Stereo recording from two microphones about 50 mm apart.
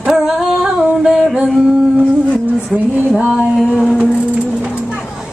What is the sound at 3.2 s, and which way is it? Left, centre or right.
Female singing, centre.